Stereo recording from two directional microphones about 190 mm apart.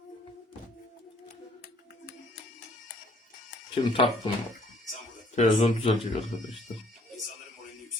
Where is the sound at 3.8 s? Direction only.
25° left (ahead or behind).